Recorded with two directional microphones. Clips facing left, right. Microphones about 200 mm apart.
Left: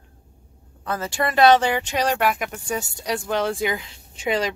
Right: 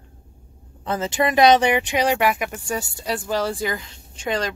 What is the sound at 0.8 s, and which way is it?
Speech, 20° right (ahead or behind).